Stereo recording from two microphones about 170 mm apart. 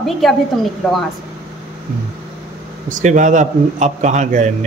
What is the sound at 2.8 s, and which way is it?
A man's voice, 45° right (ahead or behind).